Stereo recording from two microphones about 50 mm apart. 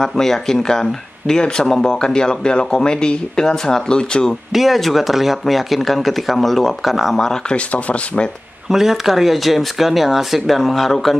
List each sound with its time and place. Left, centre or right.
0.0 s speech: centre
4.5 s speech: centre
7.2 s speech: centre
7.5 s speech: left
8.6 s speech: centre